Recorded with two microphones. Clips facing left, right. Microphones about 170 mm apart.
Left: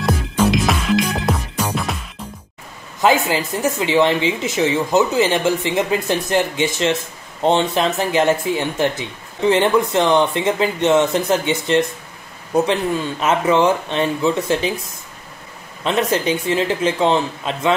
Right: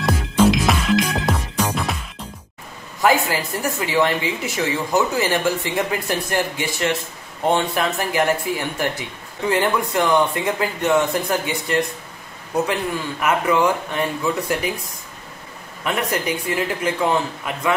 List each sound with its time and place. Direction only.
0.5 s music: centre (ahead or behind)
3.0 s speech: 20° left (ahead or behind)
13.2 s speech: 20° left (ahead or behind)
15.8 s speech: 25° left (ahead or behind)